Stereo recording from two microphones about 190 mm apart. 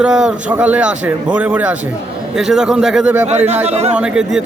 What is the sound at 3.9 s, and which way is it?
Speech, 5° right (ahead or behind).